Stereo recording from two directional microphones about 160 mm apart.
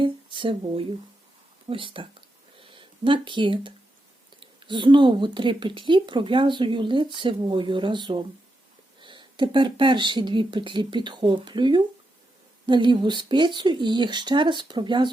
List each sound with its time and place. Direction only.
0.0 s speech: 30° right (ahead or behind)
2.6 s a sound: 30° right (ahead or behind)
4.4 s speech: 30° right (ahead or behind)